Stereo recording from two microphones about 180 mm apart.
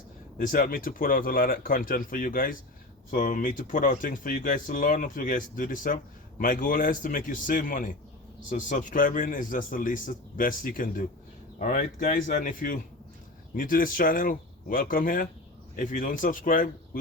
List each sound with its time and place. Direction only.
0.3 s speech: 50° left (ahead or behind)